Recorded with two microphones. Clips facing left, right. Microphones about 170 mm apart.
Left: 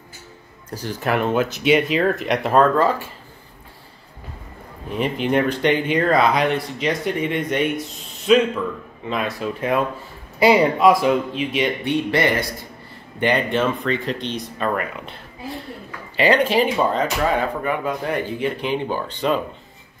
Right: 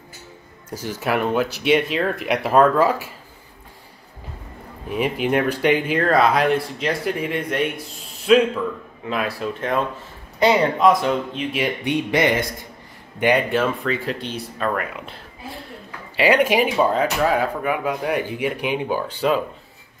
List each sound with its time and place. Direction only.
0.8 s speech: centre (ahead or behind)
4.9 s speech: 5° right (ahead or behind)
11.8 s speech: 15° right (ahead or behind)
13.2 s speech: 5° right (ahead or behind)
16.2 s speech: 10° right (ahead or behind)